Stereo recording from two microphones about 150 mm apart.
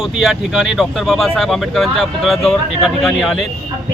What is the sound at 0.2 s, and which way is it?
Speech, centre (ahead or behind).